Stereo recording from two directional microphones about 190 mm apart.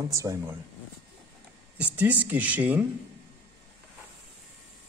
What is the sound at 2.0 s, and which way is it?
Speech, 10° right (ahead or behind).